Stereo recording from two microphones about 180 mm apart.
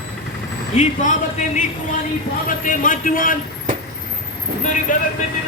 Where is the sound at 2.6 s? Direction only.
45° left (ahead or behind).